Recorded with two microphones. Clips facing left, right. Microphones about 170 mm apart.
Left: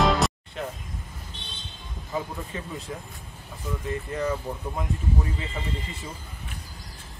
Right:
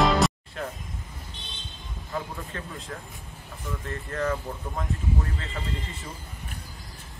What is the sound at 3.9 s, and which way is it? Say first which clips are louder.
A man's voice: left 1 dB; 10° left (ahead or behind).